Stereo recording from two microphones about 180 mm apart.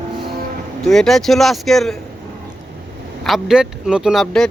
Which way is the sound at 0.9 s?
Centre (ahead or behind).